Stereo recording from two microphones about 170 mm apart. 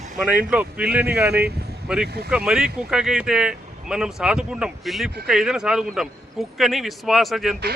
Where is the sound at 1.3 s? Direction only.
70° right (ahead or behind).